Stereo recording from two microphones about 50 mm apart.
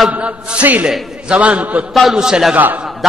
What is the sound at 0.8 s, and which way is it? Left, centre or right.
A man's voice, right.